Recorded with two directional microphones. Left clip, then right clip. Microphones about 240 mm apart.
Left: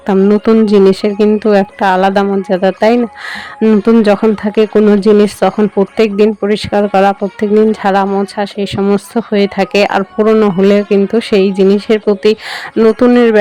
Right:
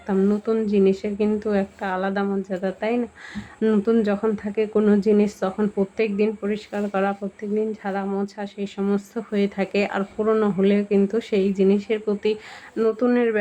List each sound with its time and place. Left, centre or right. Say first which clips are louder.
0.0 s speech: left 13 dB; left